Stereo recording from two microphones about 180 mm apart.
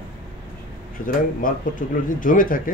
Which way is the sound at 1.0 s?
50° left (ahead or behind).